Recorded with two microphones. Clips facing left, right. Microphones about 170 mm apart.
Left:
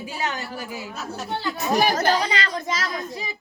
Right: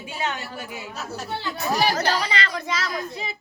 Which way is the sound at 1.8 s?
50° left (ahead or behind).